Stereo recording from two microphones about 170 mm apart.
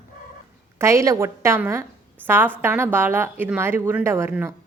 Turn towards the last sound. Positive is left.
turn(degrees=-15)  # may be behind; listen again after turning